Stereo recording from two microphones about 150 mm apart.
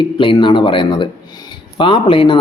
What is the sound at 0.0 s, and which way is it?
Speech, 30° left (ahead or behind).